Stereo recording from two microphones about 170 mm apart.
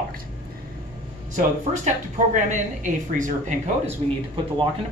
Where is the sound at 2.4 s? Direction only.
50° right (ahead or behind).